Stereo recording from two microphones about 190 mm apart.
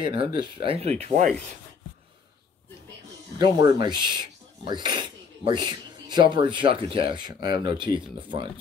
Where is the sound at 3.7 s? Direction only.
25° right (ahead or behind).